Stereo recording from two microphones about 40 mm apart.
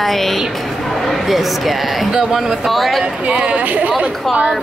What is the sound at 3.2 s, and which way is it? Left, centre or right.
Chatter, right.